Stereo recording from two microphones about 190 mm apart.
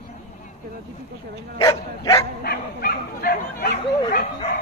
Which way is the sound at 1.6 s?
20° left (ahead or behind).